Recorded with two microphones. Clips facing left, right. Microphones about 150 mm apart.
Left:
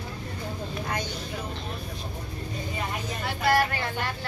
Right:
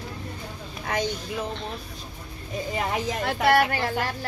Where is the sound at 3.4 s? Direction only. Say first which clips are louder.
Right 3 dB; 70° right (ahead or behind).